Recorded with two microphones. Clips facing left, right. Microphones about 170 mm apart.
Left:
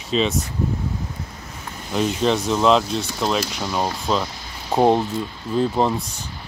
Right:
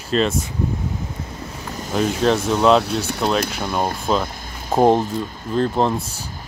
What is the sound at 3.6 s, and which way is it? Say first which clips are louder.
Speech: right 1 dB; 55° right (ahead or behind).